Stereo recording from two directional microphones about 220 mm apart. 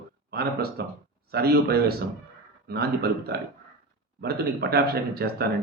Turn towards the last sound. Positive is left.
turn(degrees=-45)  # may be behind; listen again after turning